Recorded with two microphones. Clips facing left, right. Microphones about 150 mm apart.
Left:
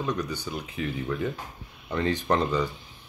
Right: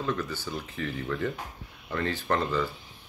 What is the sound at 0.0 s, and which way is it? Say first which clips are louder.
Speech: left 1 dB; 15° left (ahead or behind).